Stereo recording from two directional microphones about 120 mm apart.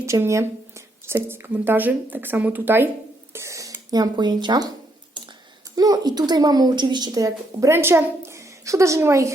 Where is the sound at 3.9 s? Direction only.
35° right (ahead or behind).